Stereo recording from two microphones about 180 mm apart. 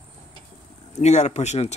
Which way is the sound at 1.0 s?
40° left (ahead or behind).